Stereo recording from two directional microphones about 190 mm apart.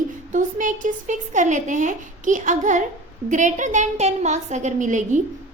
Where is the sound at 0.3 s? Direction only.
45° right (ahead or behind).